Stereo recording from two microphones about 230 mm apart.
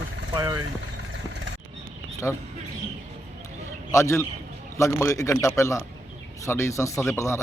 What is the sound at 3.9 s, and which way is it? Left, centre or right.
Speech, centre.